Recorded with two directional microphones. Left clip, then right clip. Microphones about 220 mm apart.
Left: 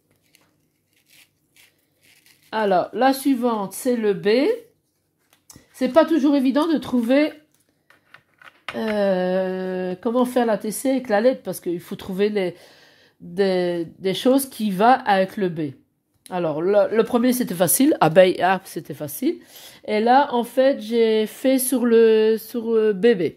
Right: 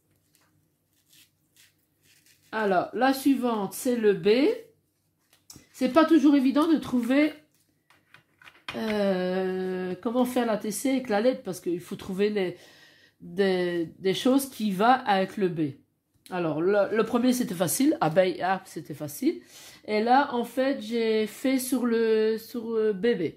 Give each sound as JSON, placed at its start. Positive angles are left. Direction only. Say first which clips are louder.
{"t": 2.5, "sound": "speech", "louder": "left 6 dB", "side_deg": 40}
{"t": 5.5, "sound": "speech", "louder": "left 5 dB", "side_deg": 30}
{"t": 8.7, "sound": "speech", "louder": "left 6 dB", "side_deg": 35}